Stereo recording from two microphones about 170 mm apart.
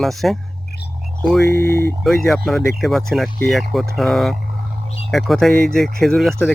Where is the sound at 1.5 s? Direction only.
15° left (ahead or behind).